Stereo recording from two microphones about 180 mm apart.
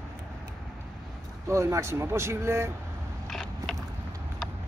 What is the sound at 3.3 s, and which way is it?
Mechanisms, centre (ahead or behind).